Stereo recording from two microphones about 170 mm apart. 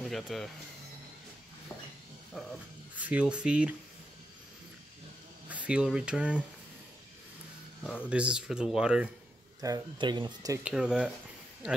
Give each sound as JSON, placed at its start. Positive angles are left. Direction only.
{"t": 0.0, "sound": "speech", "side_deg": 0}
{"t": 2.3, "sound": "speech", "side_deg": 0}
{"t": 5.5, "sound": "speech", "side_deg": -5}
{"t": 7.8, "sound": "speech", "side_deg": 10}
{"t": 8.1, "sound": "speech", "side_deg": -5}
{"t": 9.6, "sound": "speech", "side_deg": -25}
{"t": 10.6, "sound": "speech", "side_deg": -5}